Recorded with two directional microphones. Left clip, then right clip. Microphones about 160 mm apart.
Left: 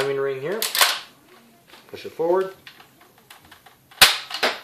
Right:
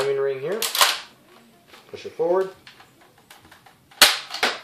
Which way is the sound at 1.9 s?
45° left (ahead or behind).